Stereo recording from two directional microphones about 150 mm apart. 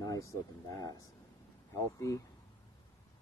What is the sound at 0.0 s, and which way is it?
Speech, 20° left (ahead or behind).